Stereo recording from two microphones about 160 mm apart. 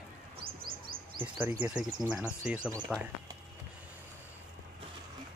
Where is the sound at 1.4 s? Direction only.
10° right (ahead or behind).